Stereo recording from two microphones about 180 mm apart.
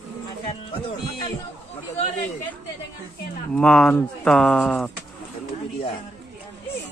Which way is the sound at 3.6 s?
5° left (ahead or behind).